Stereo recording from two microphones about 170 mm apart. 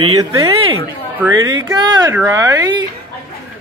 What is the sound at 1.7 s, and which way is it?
Speech, 25° right (ahead or behind).